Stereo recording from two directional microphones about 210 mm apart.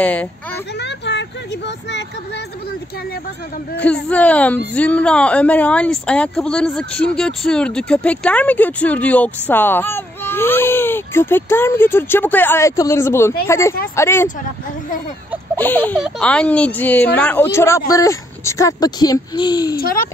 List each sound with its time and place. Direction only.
0.0 s speech: 5° left (ahead or behind)
0.7 s vehicle: 55° left (ahead or behind)
3.7 s speech: 5° left (ahead or behind)
15.5 s a sound: 10° left (ahead or behind)
16.0 s speech: 5° left (ahead or behind)
19.8 s a child's voice: 45° left (ahead or behind)